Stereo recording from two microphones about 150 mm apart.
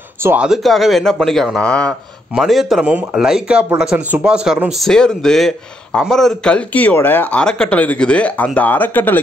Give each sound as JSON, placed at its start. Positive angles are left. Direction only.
{"t": 0.2, "sound": "speech", "side_deg": -15}
{"t": 0.5, "sound": "a man's voice", "side_deg": 0}